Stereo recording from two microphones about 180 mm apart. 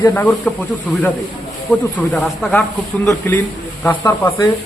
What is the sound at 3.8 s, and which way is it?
Speech, 15° left (ahead or behind).